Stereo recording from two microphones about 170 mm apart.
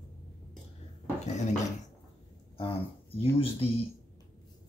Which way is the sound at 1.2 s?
45° left (ahead or behind).